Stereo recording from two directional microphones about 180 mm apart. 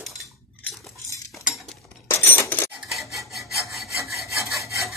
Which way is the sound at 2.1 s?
10° left (ahead or behind).